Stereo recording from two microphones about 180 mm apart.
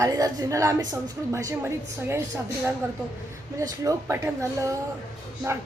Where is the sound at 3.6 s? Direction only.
20° right (ahead or behind).